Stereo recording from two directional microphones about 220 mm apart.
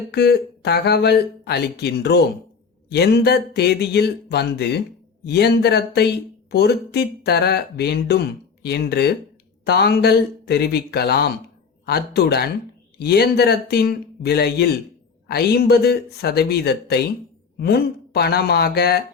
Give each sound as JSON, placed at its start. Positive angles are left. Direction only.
{"t": 0.1, "sound": "speech", "side_deg": 50}